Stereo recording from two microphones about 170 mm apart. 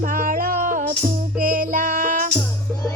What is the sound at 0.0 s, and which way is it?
Music, 55° right (ahead or behind).